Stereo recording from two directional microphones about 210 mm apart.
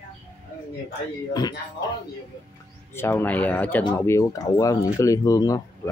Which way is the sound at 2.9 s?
10° left (ahead or behind).